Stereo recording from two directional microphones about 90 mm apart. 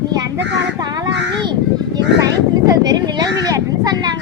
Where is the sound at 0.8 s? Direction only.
50° right (ahead or behind).